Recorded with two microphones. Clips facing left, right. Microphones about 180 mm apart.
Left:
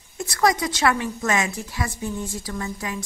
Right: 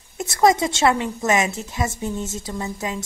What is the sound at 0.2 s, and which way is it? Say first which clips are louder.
A woman's voice: right 4 dB; 25° right (ahead or behind).